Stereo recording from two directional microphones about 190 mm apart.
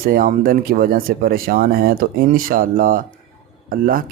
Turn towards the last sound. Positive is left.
turn(degrees=-50)  # may be behind; listen again after turning